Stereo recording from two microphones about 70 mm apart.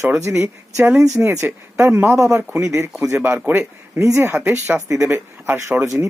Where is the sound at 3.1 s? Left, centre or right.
Right.